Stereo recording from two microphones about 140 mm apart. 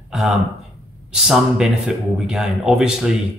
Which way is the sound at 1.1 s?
5° right (ahead or behind).